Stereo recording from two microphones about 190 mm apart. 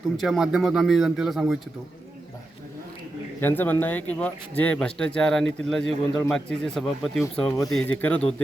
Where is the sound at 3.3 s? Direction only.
10° left (ahead or behind).